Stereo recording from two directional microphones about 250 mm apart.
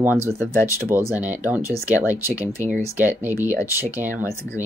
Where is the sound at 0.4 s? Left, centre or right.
Centre.